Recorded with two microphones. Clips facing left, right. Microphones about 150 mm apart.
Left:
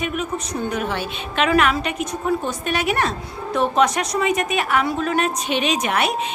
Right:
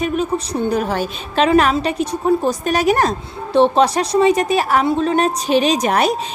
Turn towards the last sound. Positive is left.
turn(degrees=-35)  # may be behind; listen again after turning